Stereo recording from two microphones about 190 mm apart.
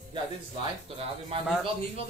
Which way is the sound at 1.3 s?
30° right (ahead or behind).